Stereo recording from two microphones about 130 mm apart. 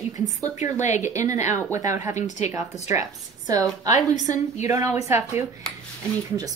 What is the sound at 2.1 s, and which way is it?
Speech, 65° left (ahead or behind).